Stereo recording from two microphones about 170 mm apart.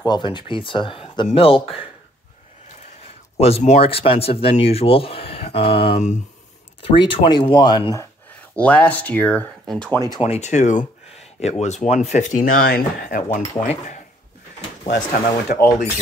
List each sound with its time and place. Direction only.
0.0 s speech: 25° left (ahead or behind)
3.3 s speech: 35° left (ahead or behind); by 8.1 s 20° left (ahead or behind)
8.5 s speech: 5° left (ahead or behind)
10.2 s speech: 40° left (ahead or behind)
15.4 s speech: 65° left (ahead or behind)